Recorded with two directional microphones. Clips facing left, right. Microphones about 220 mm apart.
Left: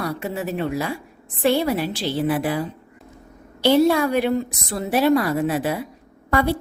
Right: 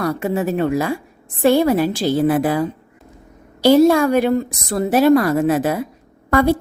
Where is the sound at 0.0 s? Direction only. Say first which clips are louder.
Right 6 dB; 50° right (ahead or behind).